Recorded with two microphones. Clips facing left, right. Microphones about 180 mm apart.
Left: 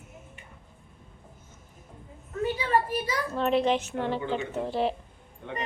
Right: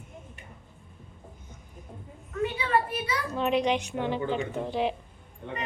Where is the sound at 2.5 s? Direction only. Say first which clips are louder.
Left 2 dB; 40° left (ahead or behind).